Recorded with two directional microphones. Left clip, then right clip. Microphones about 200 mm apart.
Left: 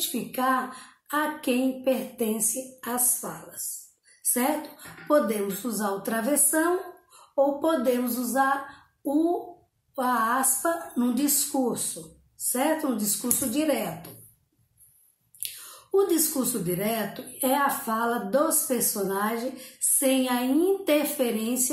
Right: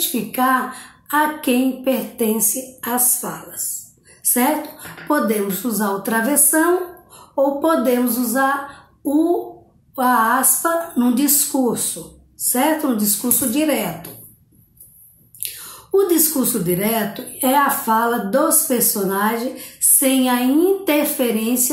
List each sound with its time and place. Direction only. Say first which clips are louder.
0.1 s a child's voice: right 8 dB; 5° right (ahead or behind)
15.9 s speech: right 7 dB; 5° right (ahead or behind)